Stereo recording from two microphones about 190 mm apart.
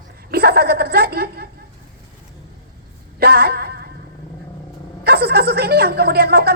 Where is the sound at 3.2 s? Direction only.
55° right (ahead or behind).